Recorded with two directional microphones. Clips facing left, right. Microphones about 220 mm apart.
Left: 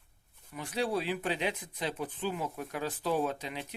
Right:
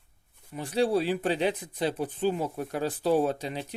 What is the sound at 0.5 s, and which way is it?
Speech, 30° right (ahead or behind).